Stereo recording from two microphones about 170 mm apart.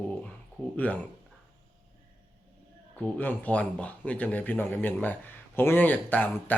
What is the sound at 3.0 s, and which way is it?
Speech, 10° left (ahead or behind).